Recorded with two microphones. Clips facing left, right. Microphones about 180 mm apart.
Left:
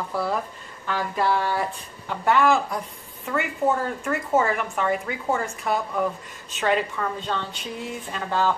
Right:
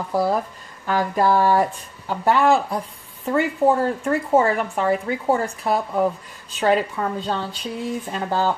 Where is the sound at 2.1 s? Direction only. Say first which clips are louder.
Right 3 dB; 35° right (ahead or behind).